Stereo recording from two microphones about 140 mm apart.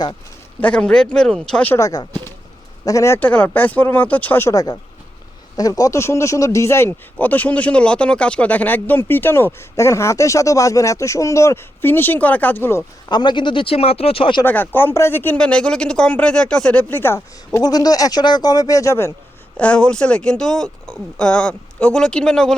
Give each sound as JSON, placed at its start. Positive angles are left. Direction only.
{"t": 0.6, "sound": "speech", "side_deg": 10}
{"t": 1.7, "sound": "speech", "side_deg": 25}
{"t": 13.1, "sound": "speech", "side_deg": 30}
{"t": 14.4, "sound": "speech", "side_deg": 15}
{"t": 17.6, "sound": "speech", "side_deg": 30}
{"t": 19.5, "sound": "speech", "side_deg": 10}